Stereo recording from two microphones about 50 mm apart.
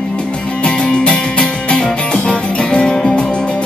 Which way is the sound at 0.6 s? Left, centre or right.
Centre.